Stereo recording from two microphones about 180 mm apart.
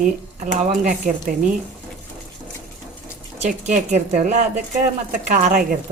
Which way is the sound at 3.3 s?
40° right (ahead or behind).